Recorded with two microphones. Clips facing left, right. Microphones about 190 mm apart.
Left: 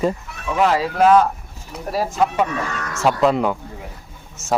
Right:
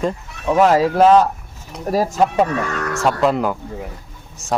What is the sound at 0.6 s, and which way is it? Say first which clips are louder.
Speech: right 4 dB; 40° right (ahead or behind).